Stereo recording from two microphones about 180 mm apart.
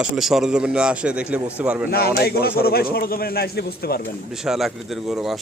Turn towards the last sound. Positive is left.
turn(degrees=0)  # may be behind; listen again after turning